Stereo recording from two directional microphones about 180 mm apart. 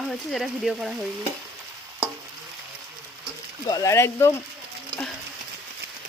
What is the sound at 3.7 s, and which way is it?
Speech, 20° left (ahead or behind).